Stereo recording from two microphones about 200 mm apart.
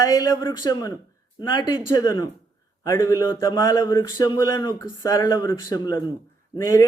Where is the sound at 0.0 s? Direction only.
20° left (ahead or behind).